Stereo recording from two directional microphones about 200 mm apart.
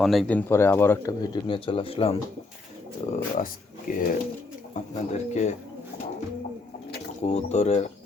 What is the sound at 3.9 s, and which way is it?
Speech, 40° left (ahead or behind).